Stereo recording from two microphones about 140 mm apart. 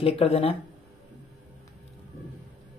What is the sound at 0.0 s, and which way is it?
Speech, 45° left (ahead or behind).